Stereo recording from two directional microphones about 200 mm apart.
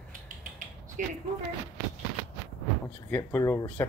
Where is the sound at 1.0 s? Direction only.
45° right (ahead or behind).